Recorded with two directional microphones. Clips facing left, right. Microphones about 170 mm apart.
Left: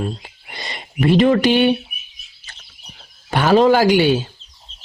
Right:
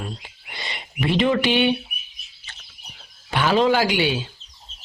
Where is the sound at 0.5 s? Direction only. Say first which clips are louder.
Left 5 dB; 40° left (ahead or behind).